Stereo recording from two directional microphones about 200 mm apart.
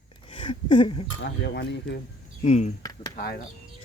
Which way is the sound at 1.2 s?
60° left (ahead or behind).